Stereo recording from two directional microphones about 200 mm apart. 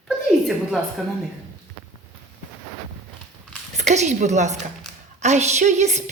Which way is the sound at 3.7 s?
35° right (ahead or behind).